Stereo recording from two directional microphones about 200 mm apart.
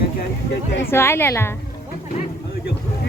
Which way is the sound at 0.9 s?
10° left (ahead or behind).